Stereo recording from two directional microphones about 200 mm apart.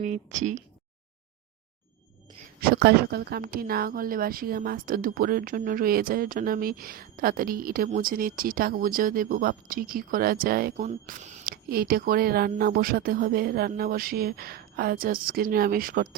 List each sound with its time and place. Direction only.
0.0 s speech: 40° right (ahead or behind)
2.6 s speech: 50° right (ahead or behind)